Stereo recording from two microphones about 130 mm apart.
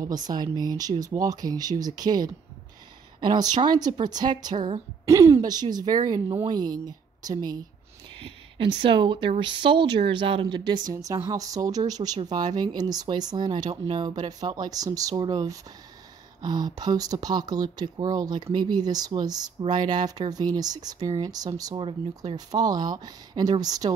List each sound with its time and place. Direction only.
0.0 s speech: 30° right (ahead or behind)
5.0 s speech: 20° right (ahead or behind)
8.2 s speech: 40° right (ahead or behind)